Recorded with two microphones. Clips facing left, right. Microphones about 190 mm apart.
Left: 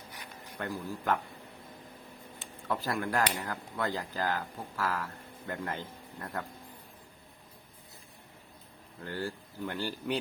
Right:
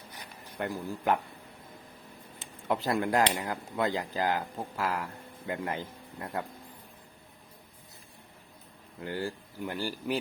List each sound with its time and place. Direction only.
0.6 s speech: 15° right (ahead or behind)
2.4 s a man's voice: 20° right (ahead or behind)
9.0 s speech: 15° right (ahead or behind)